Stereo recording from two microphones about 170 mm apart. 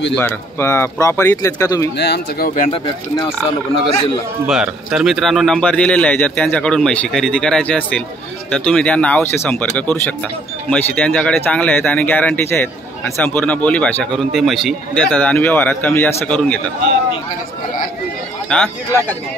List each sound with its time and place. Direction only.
0.1 s speech: 15° left (ahead or behind)
2.0 s speech: 75° left (ahead or behind); by 2.7 s 55° left (ahead or behind)
2.7 s speech: 30° left (ahead or behind)
4.5 s speech: 5° right (ahead or behind)
10.7 s speech: 10° left (ahead or behind)
18.5 s speech: 10° left (ahead or behind)